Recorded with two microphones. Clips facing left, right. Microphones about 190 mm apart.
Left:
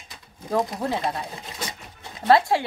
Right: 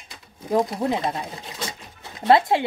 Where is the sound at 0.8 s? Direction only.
20° right (ahead or behind).